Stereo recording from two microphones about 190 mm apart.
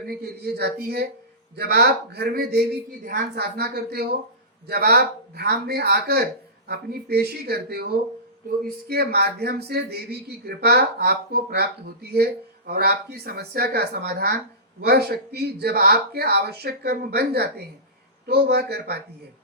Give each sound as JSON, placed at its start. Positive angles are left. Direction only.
{"t": 0.0, "sound": "speech", "side_deg": -55}